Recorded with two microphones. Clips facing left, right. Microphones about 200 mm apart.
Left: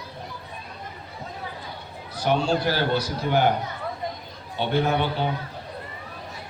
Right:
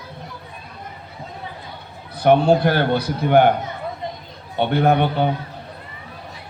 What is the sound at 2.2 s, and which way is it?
A man's voice, 55° right (ahead or behind).